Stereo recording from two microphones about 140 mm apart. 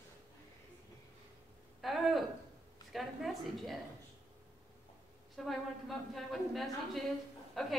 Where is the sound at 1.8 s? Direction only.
Centre (ahead or behind).